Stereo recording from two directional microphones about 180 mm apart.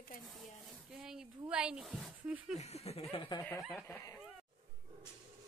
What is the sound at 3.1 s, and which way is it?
Speech, 25° left (ahead or behind).